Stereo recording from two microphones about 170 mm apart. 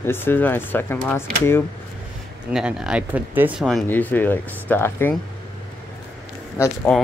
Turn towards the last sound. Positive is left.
turn(degrees=15)  # may be behind; listen again after turning